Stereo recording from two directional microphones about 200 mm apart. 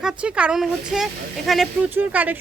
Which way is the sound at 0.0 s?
5° right (ahead or behind).